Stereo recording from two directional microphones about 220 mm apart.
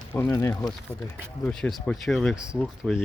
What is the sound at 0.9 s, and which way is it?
Speech, 5° left (ahead or behind).